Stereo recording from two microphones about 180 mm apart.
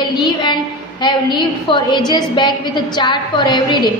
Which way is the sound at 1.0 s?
25° left (ahead or behind).